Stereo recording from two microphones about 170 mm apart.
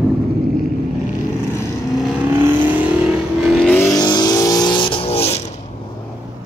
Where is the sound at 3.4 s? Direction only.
Centre (ahead or behind).